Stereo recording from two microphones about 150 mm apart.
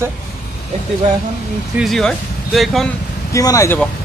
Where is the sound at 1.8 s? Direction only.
Centre (ahead or behind).